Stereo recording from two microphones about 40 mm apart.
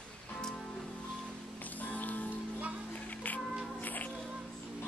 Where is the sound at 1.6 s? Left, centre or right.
Left.